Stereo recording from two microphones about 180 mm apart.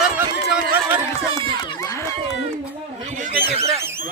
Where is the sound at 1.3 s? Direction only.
20° left (ahead or behind).